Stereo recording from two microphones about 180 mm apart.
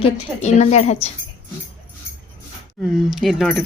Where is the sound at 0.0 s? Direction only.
40° left (ahead or behind).